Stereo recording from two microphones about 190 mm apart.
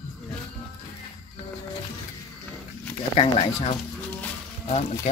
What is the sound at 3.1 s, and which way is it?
Speech, 30° left (ahead or behind).